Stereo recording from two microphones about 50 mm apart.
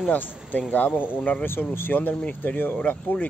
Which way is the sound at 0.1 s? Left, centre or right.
Left.